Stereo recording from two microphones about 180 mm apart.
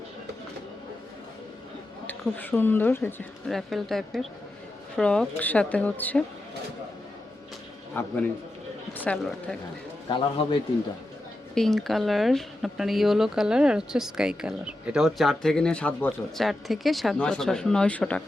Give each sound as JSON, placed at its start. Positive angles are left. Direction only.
{"t": 2.0, "sound": "speech", "side_deg": 10}
{"t": 7.9, "sound": "speech", "side_deg": 10}
{"t": 8.9, "sound": "a sound", "side_deg": 10}
{"t": 10.1, "sound": "a man's voice", "side_deg": 25}
{"t": 11.5, "sound": "speech", "side_deg": 0}